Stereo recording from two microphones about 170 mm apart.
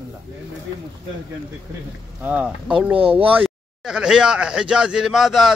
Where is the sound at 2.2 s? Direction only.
10° right (ahead or behind).